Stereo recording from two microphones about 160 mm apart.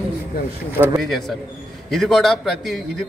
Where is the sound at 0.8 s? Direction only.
20° right (ahead or behind).